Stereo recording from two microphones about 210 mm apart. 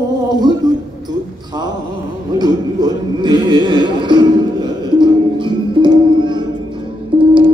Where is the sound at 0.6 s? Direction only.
20° right (ahead or behind).